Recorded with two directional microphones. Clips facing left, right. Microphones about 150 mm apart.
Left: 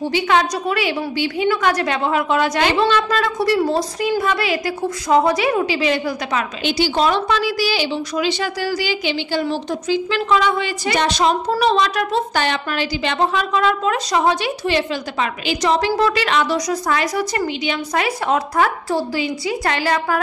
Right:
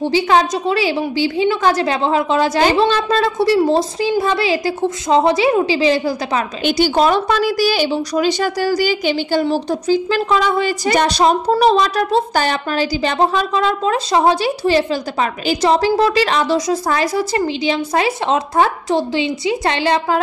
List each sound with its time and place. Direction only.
0.0 s a woman's voice: 35° right (ahead or behind)
6.6 s a woman's voice: 45° right (ahead or behind); by 20.2 s 25° right (ahead or behind)